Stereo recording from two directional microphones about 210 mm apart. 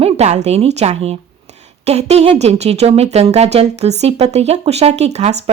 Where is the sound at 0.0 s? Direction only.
30° right (ahead or behind).